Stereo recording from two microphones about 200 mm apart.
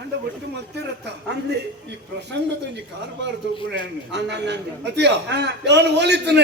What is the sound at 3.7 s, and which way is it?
A man's voice, 60° right (ahead or behind).